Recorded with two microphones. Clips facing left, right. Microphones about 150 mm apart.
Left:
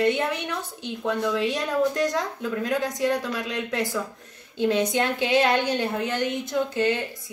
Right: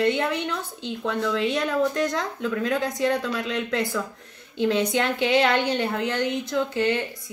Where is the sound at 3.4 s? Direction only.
20° left (ahead or behind).